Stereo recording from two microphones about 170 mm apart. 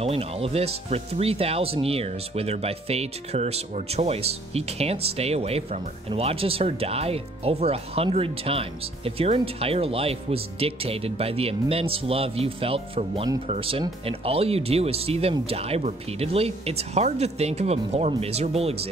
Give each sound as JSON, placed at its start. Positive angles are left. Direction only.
{"t": 0.0, "sound": "speech", "side_deg": -35}